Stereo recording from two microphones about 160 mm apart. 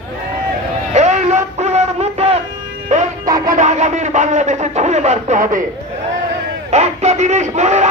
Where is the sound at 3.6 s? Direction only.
45° right (ahead or behind).